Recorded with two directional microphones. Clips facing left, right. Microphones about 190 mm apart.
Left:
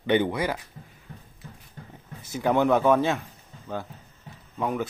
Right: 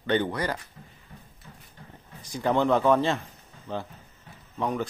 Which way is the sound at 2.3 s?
10° left (ahead or behind).